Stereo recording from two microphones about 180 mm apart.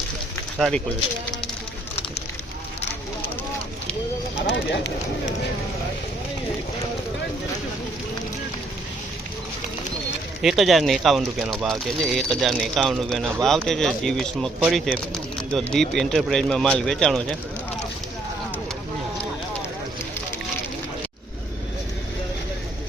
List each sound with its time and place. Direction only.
4.4 s speech: 75° left (ahead or behind)
10.4 s speech: centre (ahead or behind)